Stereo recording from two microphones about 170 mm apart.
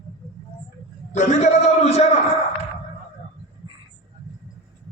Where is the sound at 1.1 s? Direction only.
45° left (ahead or behind).